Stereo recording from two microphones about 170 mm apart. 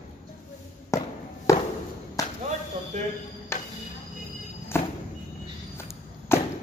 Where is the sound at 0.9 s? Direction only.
15° left (ahead or behind).